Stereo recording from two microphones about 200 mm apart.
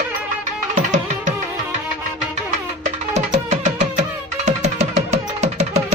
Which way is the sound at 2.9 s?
35° right (ahead or behind).